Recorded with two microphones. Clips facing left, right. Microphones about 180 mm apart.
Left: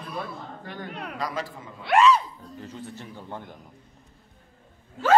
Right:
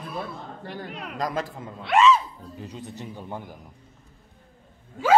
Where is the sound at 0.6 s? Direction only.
35° right (ahead or behind).